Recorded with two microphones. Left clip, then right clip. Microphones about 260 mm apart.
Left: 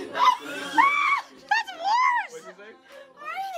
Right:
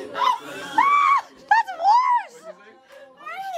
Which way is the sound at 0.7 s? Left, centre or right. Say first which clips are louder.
Right 4 dB; right.